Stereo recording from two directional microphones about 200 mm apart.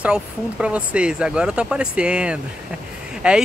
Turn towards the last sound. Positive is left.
turn(degrees=-5)  # may be behind; listen again after turning